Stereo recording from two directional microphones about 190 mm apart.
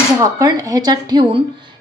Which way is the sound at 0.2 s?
20° right (ahead or behind).